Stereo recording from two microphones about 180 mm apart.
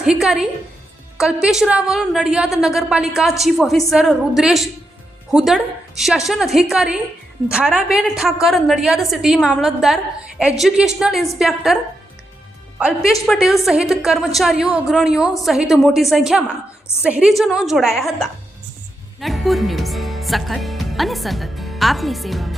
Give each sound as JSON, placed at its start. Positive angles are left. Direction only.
{"t": 0.0, "sound": "a woman's voice", "side_deg": -5}
{"t": 13.2, "sound": "a woman's voice", "side_deg": 0}